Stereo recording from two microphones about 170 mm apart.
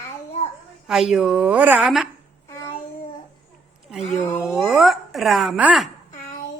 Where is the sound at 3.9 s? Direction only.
Centre (ahead or behind).